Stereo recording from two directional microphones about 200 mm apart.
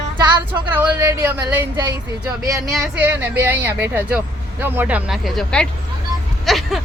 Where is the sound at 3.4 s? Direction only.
10° right (ahead or behind).